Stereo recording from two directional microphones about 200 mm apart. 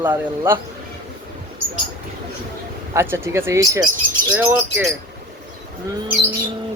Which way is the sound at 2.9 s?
10° right (ahead or behind).